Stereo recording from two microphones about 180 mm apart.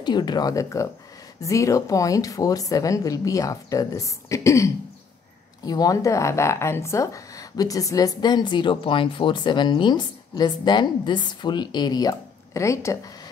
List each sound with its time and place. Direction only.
0.0 s speech: 25° left (ahead or behind)